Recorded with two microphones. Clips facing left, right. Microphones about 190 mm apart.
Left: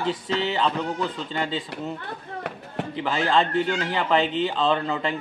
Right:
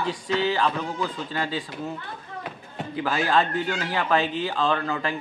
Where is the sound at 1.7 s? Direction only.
70° left (ahead or behind).